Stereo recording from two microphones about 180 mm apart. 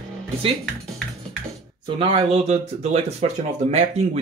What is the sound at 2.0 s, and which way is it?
Speech, 30° right (ahead or behind).